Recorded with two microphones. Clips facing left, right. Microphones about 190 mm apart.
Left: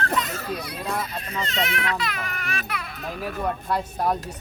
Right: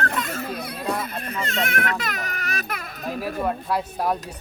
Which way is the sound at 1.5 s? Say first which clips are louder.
Right 2 dB; 50° right (ahead or behind).